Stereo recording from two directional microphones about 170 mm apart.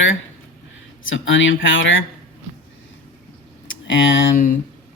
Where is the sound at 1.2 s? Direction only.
90° left.